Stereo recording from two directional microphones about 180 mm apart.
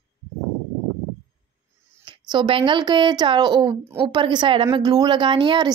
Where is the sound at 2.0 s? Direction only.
25° right (ahead or behind).